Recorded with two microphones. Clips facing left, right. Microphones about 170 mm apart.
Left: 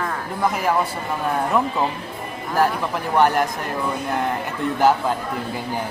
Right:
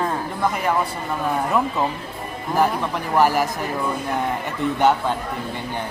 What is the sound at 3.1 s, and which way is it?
Speech, 5° right (ahead or behind).